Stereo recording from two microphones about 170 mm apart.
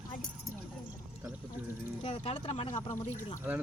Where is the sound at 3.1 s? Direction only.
45° left (ahead or behind).